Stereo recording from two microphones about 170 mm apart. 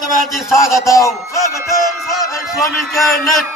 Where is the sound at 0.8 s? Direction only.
20° left (ahead or behind).